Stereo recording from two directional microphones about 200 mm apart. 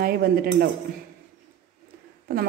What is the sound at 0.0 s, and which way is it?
Speech, 50° right (ahead or behind).